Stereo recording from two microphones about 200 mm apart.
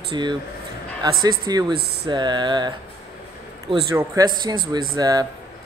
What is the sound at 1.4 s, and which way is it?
Speech, 20° right (ahead or behind).